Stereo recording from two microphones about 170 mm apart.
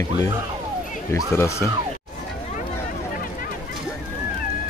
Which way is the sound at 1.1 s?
15° left (ahead or behind).